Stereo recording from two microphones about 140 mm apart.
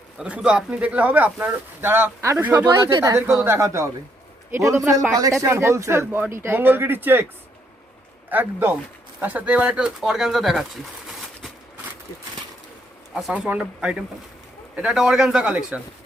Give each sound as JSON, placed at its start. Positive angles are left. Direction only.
{"t": 0.2, "sound": "speech", "side_deg": -5}
{"t": 2.6, "sound": "a man's voice", "side_deg": -25}
{"t": 8.3, "sound": "speech", "side_deg": -15}
{"t": 13.1, "sound": "speech", "side_deg": 0}